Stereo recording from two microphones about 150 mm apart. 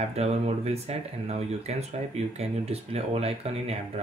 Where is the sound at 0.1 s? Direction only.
45° right (ahead or behind).